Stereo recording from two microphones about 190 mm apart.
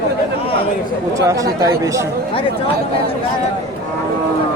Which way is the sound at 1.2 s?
15° right (ahead or behind).